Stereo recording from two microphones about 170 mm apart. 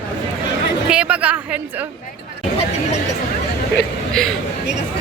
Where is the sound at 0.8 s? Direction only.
5° right (ahead or behind).